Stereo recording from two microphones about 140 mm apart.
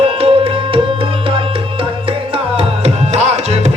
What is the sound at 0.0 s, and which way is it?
Music, 45° right (ahead or behind).